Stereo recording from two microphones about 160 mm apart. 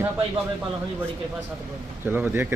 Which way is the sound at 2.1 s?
15° right (ahead or behind).